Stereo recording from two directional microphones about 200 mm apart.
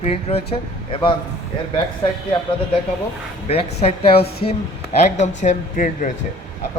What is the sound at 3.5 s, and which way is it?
A man's voice, 30° left (ahead or behind).